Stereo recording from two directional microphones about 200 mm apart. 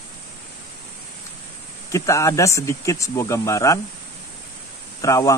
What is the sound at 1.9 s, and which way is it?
Speech, 15° left (ahead or behind).